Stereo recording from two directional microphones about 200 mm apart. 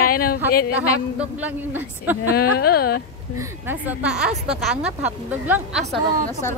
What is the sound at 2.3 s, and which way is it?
Speech, 50° left (ahead or behind).